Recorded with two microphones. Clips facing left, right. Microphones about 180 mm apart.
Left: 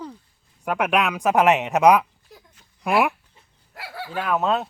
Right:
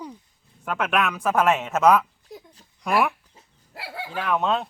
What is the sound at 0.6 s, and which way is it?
Speech, 15° left (ahead or behind).